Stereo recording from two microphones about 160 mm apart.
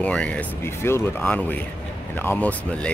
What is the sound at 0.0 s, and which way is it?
Speech, 5° left (ahead or behind).